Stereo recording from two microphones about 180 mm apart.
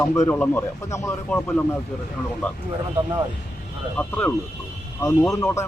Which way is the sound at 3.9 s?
10° left (ahead or behind).